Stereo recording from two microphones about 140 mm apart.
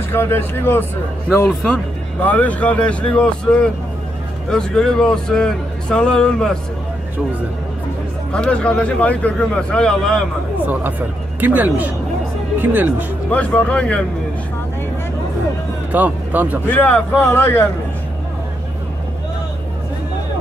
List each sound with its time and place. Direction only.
0.1 s a man's voice: 15° left (ahead or behind)
8.3 s a man's voice: 10° left (ahead or behind)
10.6 s speech: 10° right (ahead or behind)
13.3 s a man's voice: 10° left (ahead or behind)
15.9 s speech: 10° right (ahead or behind)
16.6 s a man's voice: 10° left (ahead or behind)